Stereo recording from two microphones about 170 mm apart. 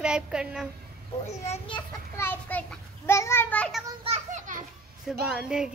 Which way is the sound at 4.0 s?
40° right (ahead or behind).